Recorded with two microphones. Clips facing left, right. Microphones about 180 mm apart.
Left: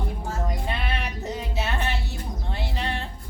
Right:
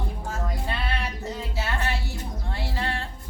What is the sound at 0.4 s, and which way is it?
Music, 20° left (ahead or behind).